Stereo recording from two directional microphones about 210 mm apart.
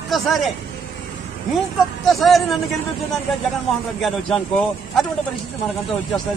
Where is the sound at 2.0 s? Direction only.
Centre (ahead or behind).